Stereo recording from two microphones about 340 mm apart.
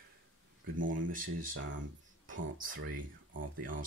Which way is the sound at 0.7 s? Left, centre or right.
Right.